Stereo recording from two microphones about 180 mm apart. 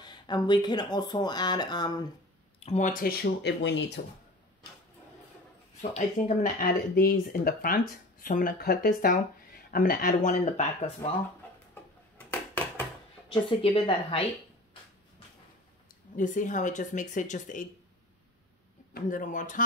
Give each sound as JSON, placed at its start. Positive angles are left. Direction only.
{"t": 0.0, "sound": "speech", "side_deg": 25}
{"t": 2.6, "sound": "speech", "side_deg": 40}
{"t": 5.8, "sound": "speech", "side_deg": 40}
{"t": 12.2, "sound": "a sound", "side_deg": 10}
{"t": 13.3, "sound": "speech", "side_deg": 30}
{"t": 16.2, "sound": "speech", "side_deg": 45}
{"t": 18.9, "sound": "speech", "side_deg": 45}